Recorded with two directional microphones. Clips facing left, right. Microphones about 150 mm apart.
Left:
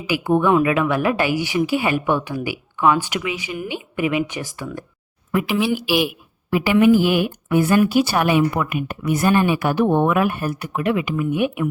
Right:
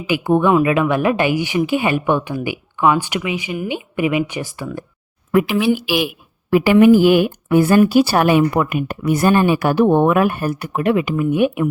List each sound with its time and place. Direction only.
0.1 s a woman's voice: 20° right (ahead or behind)
6.5 s speech: 50° right (ahead or behind)
8.9 s a woman's voice: 35° right (ahead or behind)